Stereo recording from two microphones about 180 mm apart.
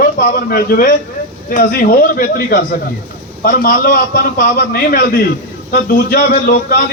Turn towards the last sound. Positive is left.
turn(degrees=55)  # may be behind; listen again after turning